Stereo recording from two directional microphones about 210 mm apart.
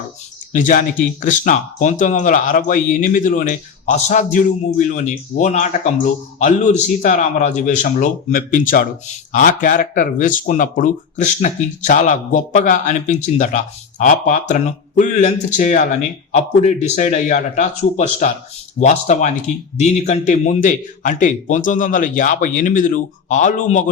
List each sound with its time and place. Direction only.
0.5 s speech: 40° left (ahead or behind)